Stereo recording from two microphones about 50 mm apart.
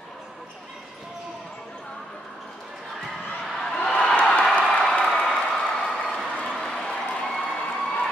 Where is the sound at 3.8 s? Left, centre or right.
Centre.